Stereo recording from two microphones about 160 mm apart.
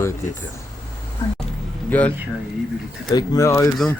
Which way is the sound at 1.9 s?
10° left (ahead or behind).